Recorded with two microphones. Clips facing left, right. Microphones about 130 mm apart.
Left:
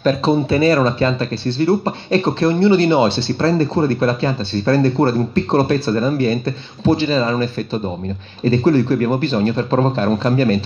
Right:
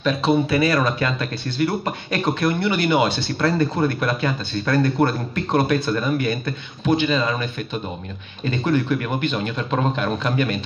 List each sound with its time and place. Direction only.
0.0 s speech: 30° left (ahead or behind)
8.5 s speech: 35° left (ahead or behind)